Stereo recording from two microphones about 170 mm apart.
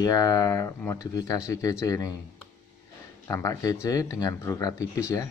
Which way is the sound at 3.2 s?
15° left (ahead or behind).